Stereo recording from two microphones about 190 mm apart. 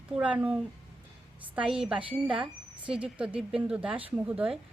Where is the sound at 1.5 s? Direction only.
5° right (ahead or behind).